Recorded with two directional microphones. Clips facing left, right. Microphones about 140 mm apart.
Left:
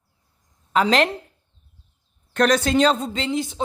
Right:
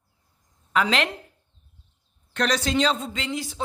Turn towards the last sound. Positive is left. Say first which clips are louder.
# left 5 dB
turn(degrees=20)  # may be behind; listen again after turning